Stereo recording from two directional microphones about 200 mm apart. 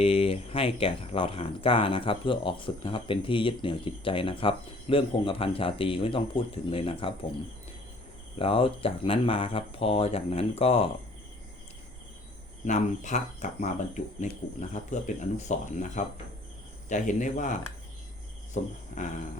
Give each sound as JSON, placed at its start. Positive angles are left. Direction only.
{"t": 0.0, "sound": "speech", "side_deg": 30}
{"t": 8.4, "sound": "speech", "side_deg": 30}
{"t": 12.6, "sound": "speech", "side_deg": 35}